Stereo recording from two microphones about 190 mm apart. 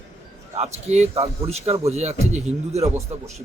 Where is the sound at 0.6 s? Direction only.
35° right (ahead or behind).